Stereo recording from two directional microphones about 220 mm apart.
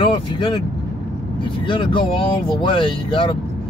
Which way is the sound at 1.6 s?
25° left (ahead or behind).